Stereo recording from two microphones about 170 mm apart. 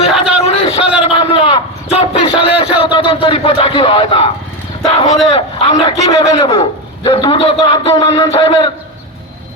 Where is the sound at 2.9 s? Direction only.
35° left (ahead or behind).